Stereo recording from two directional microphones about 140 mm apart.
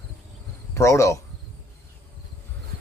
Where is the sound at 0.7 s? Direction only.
20° left (ahead or behind).